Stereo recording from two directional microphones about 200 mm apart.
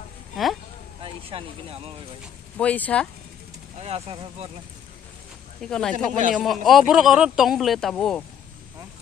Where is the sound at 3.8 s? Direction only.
30° right (ahead or behind).